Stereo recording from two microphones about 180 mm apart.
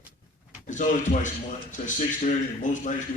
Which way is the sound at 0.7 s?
45° left (ahead or behind).